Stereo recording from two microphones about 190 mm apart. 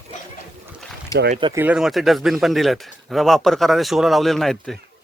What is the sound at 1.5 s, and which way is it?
A man's voice, 10° right (ahead or behind).